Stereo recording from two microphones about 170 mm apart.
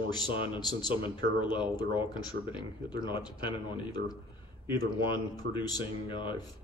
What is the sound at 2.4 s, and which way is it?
Speech, 85° right.